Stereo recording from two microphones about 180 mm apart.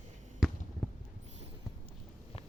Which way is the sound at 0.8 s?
5° left (ahead or behind).